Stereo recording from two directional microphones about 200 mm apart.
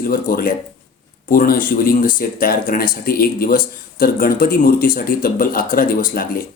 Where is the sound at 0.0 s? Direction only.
45° left (ahead or behind).